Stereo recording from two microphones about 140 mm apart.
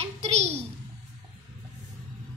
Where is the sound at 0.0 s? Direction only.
50° right (ahead or behind).